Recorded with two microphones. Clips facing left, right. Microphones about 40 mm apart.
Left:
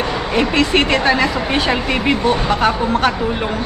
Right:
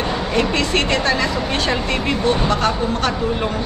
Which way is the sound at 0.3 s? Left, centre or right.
Centre.